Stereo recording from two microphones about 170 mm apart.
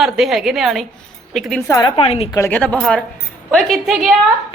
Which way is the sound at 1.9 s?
35° left (ahead or behind).